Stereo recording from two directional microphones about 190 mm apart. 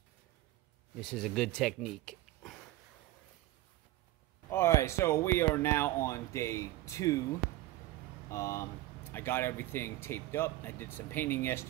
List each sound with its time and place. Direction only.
1.0 s speech: 5° left (ahead or behind)
4.5 s speech: 15° left (ahead or behind)
8.3 s speech: 15° left (ahead or behind)